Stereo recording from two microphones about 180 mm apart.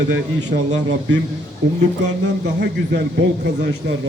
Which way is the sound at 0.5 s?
55° right (ahead or behind).